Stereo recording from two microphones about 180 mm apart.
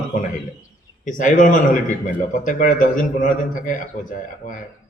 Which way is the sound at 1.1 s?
45° left (ahead or behind).